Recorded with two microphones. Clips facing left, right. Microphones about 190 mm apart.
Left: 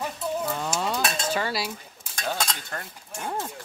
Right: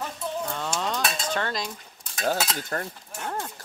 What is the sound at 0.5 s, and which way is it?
Livestock, 10° left (ahead or behind).